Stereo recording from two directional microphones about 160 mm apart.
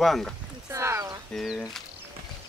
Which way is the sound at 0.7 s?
20° right (ahead or behind).